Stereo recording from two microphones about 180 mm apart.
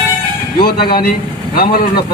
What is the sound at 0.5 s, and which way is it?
Speech, 60° left (ahead or behind).